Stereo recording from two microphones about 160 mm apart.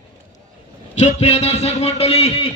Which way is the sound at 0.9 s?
45° left (ahead or behind).